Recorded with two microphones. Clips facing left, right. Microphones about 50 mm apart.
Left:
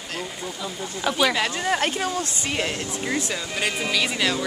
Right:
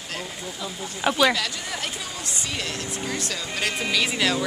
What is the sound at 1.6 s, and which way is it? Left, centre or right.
Speech, left.